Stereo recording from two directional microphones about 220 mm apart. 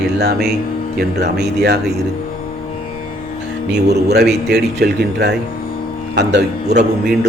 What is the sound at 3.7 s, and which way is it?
A man's voice, 50° right (ahead or behind).